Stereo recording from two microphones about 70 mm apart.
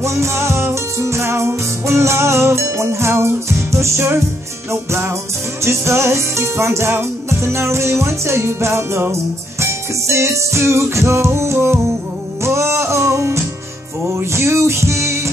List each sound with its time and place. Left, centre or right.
0.0 s music: right
5.6 s music: right